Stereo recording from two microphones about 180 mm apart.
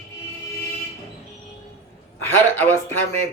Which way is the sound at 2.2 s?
10° left (ahead or behind).